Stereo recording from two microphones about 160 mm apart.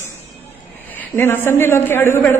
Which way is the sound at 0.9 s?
10° left (ahead or behind).